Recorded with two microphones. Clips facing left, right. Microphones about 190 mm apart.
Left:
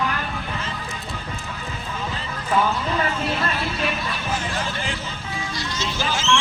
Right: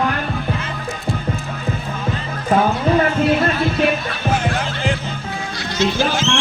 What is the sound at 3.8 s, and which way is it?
Music, 60° right (ahead or behind).